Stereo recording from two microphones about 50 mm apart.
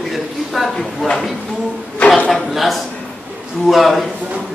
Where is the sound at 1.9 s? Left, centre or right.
Left.